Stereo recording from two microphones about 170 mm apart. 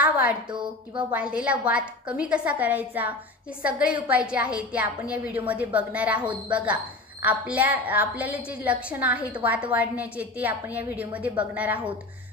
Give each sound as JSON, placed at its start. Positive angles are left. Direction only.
{"t": 0.0, "sound": "a sound", "side_deg": -10}
{"t": 0.5, "sound": "a woman's voice", "side_deg": -30}
{"t": 1.1, "sound": "a woman's voice", "side_deg": -5}